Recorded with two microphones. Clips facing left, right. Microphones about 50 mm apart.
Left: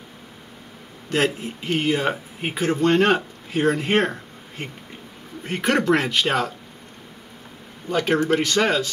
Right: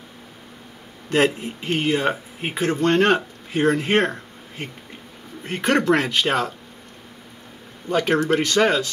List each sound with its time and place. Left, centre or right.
1.1 s speech: right
1.8 s speech: centre
7.9 s speech: centre